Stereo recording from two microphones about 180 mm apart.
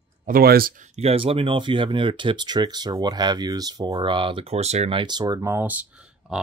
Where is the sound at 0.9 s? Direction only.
35° right (ahead or behind).